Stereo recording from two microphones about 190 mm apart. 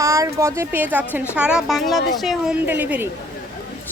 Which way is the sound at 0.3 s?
15° right (ahead or behind).